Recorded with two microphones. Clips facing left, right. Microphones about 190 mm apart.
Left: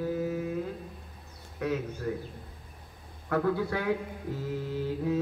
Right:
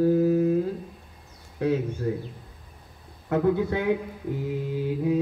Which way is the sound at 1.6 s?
30° right (ahead or behind).